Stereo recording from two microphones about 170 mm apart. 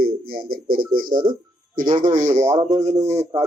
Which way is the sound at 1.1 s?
25° right (ahead or behind).